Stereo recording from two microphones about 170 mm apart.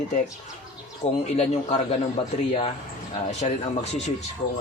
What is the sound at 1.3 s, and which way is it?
Speech, 40° left (ahead or behind).